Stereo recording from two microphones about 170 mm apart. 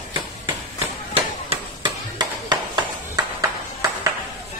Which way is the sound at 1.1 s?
30° right (ahead or behind).